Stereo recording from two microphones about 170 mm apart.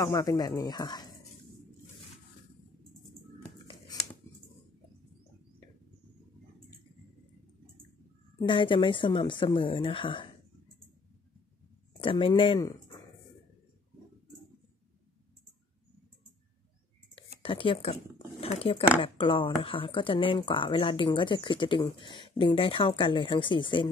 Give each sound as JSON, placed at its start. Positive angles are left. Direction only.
{"t": 0.0, "sound": "speech", "side_deg": 20}
{"t": 8.4, "sound": "speech", "side_deg": 30}
{"t": 12.0, "sound": "speech", "side_deg": 30}
{"t": 17.1, "sound": "a sound", "side_deg": 30}
{"t": 18.4, "sound": "speech", "side_deg": 35}